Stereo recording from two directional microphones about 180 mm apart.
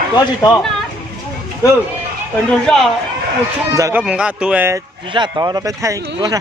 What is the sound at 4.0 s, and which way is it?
Speech, 5° right (ahead or behind).